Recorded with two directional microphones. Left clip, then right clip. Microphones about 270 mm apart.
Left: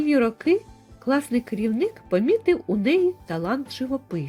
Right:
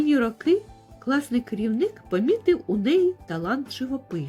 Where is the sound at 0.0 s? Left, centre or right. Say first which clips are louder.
Left 1 dB; centre.